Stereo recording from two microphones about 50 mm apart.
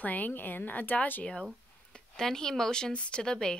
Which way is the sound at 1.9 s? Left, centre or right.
Centre.